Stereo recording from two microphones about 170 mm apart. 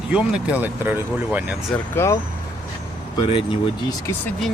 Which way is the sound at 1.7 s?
15° left (ahead or behind).